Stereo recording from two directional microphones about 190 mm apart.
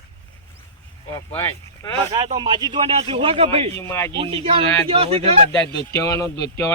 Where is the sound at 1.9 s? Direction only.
25° right (ahead or behind).